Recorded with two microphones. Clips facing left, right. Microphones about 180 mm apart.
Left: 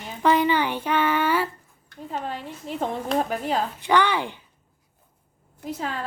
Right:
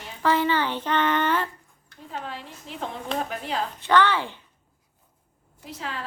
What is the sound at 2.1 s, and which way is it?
A woman's voice, 40° left (ahead or behind).